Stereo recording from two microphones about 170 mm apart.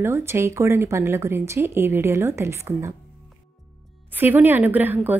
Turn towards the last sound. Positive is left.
turn(degrees=-10)  # may be behind; listen again after turning